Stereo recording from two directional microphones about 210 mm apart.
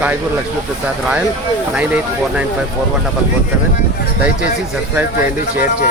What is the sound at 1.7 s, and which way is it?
Speech, 5° right (ahead or behind).